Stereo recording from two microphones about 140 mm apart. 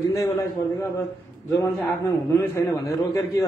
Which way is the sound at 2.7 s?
25° left (ahead or behind).